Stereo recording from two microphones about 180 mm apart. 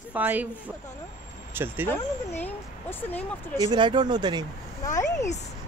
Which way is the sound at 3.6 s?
25° right (ahead or behind).